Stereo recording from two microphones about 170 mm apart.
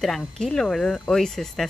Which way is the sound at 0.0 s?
5° left (ahead or behind).